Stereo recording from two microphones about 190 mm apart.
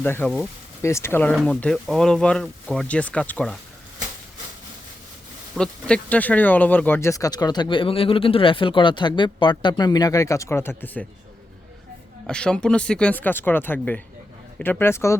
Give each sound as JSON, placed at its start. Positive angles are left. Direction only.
{"t": 0.0, "sound": "speech", "side_deg": 10}
{"t": 5.5, "sound": "speech", "side_deg": 5}
{"t": 12.3, "sound": "speech", "side_deg": 5}